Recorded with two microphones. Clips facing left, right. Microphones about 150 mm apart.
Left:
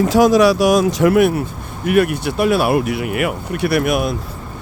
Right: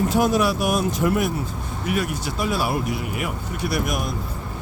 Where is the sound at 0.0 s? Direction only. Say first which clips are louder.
Left 8 dB; 90° left.